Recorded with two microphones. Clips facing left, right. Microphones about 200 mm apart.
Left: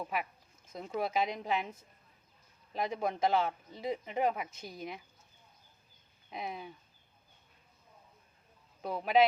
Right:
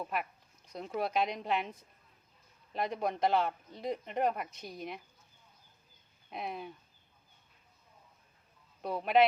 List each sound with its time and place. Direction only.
0.0 s speech: 5° left (ahead or behind)
2.7 s speech: centre (ahead or behind)
6.3 s speech: centre (ahead or behind)
8.8 s speech: centre (ahead or behind)